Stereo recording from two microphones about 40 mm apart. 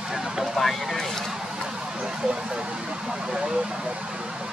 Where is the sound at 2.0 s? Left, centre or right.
Centre.